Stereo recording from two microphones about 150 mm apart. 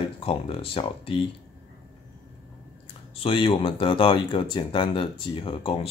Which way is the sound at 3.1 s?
35° left (ahead or behind).